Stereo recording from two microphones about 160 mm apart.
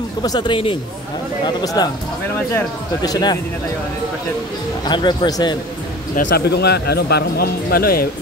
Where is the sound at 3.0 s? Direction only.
25° left (ahead or behind).